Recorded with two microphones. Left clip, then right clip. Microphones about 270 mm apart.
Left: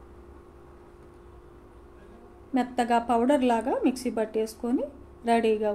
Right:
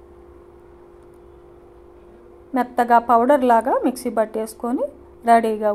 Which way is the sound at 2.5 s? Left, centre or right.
Centre.